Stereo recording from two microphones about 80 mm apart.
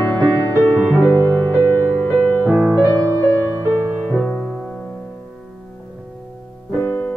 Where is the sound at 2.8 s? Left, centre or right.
Right.